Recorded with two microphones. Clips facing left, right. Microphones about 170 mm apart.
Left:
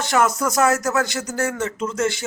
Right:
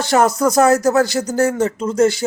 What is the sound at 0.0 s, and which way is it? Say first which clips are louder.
A man's voice: right 5 dB; 35° right (ahead or behind).